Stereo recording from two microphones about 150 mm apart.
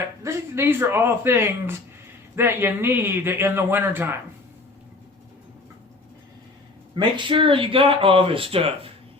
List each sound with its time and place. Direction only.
0.2 s a man's voice: 20° right (ahead or behind)
7.3 s speech: 35° right (ahead or behind)